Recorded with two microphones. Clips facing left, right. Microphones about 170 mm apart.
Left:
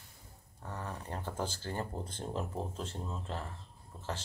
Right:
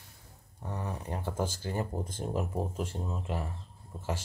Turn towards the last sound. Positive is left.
turn(degrees=-15)  # may be behind; listen again after turning